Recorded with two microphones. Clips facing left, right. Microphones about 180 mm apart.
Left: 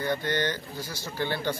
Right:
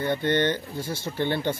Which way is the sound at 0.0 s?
25° right (ahead or behind).